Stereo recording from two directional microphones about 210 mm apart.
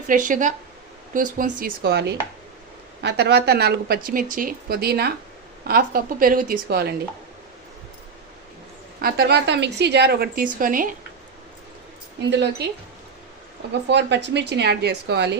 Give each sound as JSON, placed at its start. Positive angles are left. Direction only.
{"t": 0.1, "sound": "speech", "side_deg": -40}
{"t": 9.0, "sound": "speech", "side_deg": -45}
{"t": 12.2, "sound": "a woman's voice", "side_deg": -55}
{"t": 13.8, "sound": "a woman's voice", "side_deg": -55}